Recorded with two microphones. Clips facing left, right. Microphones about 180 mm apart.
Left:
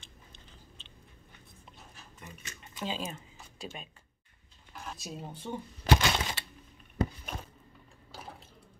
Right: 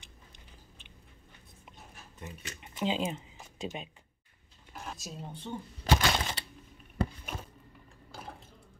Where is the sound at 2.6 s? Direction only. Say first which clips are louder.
Right 5 dB; 20° right (ahead or behind).